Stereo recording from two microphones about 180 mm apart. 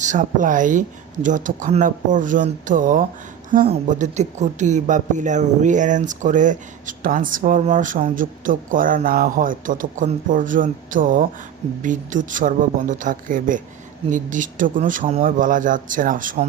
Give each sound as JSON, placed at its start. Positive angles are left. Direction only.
{"t": 0.0, "sound": "speech", "side_deg": -45}